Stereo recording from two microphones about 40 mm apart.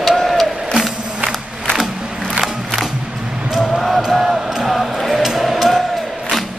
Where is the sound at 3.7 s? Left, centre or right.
Centre.